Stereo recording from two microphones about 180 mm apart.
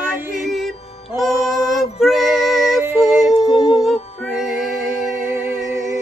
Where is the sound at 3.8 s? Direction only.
Centre (ahead or behind).